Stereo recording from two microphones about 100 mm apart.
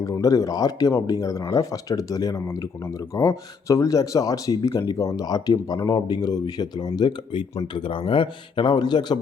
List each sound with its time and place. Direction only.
0.0 s a man's voice: 35° left (ahead or behind)